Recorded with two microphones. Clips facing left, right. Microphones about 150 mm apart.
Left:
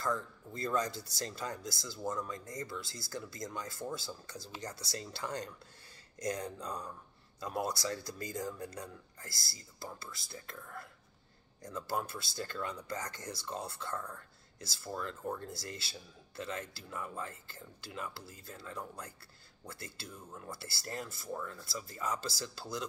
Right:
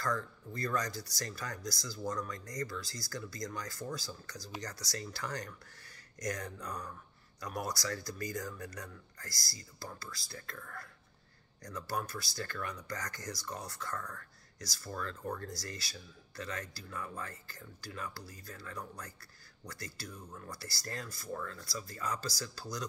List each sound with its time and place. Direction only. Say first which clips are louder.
0.0 s speech: even; 25° left (ahead or behind)
20.1 s speech: right 1 dB; 5° left (ahead or behind)
20.3 s speech: left 1 dB; 25° left (ahead or behind)